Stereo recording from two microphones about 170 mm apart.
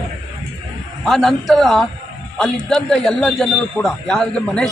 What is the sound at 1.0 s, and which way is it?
A man's voice, centre (ahead or behind).